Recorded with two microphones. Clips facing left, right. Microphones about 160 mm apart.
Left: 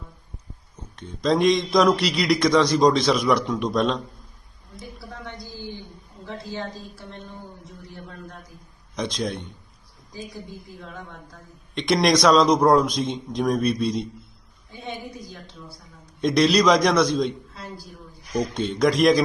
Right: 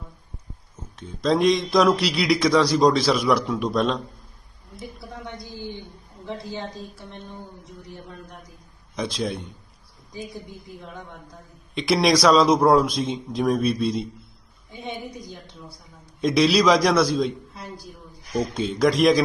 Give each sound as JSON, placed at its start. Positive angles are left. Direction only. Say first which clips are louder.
{"t": 0.9, "sound": "a man's voice", "louder": "even", "side_deg": 0}
{"t": 4.9, "sound": "a sound", "louder": "left 1 dB", "side_deg": -20}
{"t": 6.4, "sound": "speech", "louder": "even", "side_deg": -20}
{"t": 9.0, "sound": "a man's voice", "louder": "even", "side_deg": 0}
{"t": 11.7, "sound": "a man's voice", "louder": "even", "side_deg": -5}
{"t": 14.7, "sound": "a woman's voice", "louder": "right 1 dB", "side_deg": -20}
{"t": 16.2, "sound": "a man's voice", "louder": "even", "side_deg": 0}
{"t": 18.3, "sound": "a man's voice", "louder": "even", "side_deg": 0}